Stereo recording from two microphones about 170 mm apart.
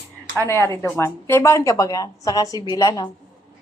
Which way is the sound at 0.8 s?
15° left (ahead or behind).